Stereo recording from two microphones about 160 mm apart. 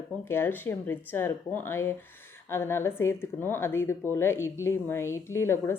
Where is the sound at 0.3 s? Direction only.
15° left (ahead or behind).